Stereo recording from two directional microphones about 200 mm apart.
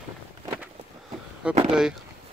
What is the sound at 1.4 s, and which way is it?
Speech, 5° right (ahead or behind).